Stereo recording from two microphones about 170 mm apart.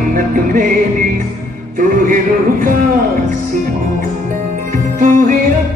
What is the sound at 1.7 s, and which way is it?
Music, 55° right (ahead or behind).